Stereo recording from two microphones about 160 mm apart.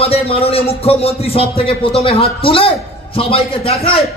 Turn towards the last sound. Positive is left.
turn(degrees=40)  # may be behind; listen again after turning